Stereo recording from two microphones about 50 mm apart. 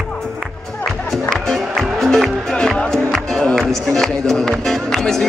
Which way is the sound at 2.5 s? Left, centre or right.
Centre.